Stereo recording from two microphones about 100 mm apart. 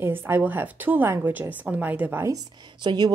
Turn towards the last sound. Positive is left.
turn(degrees=-45)  # may be behind; listen again after turning